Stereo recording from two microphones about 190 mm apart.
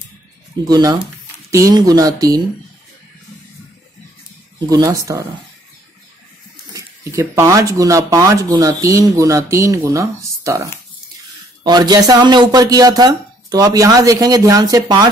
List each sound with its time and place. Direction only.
0.7 s a man's voice: 20° right (ahead or behind)
4.6 s a man's voice: 20° right (ahead or behind)
6.7 s a man's voice: 15° right (ahead or behind)